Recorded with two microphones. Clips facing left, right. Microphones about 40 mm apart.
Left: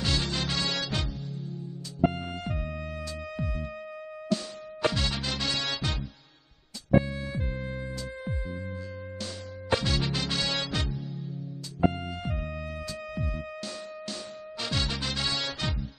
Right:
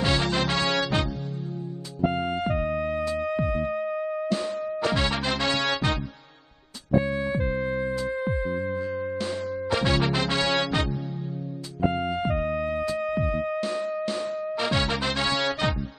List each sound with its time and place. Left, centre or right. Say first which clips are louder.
0.0 s music: right 6 dB; right
2.1 s music: right 9 dB; right
4.9 s music: right 6 dB; right
7.1 s music: right 9 dB; right
9.8 s music: right 8 dB; right